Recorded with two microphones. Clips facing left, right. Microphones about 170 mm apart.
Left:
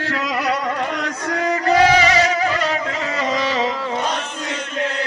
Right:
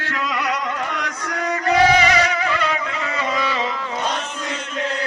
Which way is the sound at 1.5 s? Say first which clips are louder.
Left 1 dB; 35° left (ahead or behind).